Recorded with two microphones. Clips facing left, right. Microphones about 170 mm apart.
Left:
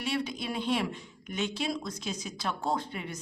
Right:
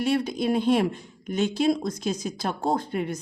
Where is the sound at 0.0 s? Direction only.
45° right (ahead or behind).